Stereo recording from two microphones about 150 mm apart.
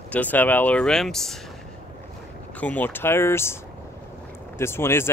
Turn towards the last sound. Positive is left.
turn(degrees=15)  # may be behind; listen again after turning